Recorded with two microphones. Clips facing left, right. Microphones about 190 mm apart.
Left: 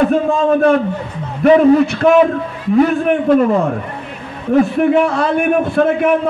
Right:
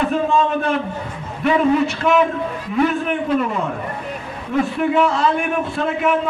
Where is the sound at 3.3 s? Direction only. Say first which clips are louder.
Left 10 dB; 45° left (ahead or behind).